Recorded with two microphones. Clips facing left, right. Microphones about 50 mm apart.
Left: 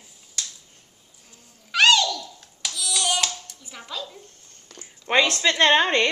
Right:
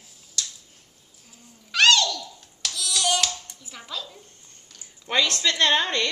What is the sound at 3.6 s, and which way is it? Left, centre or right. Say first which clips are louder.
Dishes: left 3 dB; centre.